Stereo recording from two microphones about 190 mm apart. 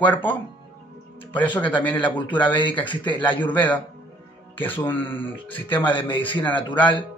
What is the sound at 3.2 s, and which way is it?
Speech, 10° left (ahead or behind).